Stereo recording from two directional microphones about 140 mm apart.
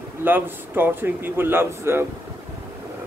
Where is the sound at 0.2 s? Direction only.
15° right (ahead or behind).